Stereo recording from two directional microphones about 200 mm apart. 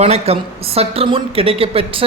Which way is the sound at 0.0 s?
30° right (ahead or behind).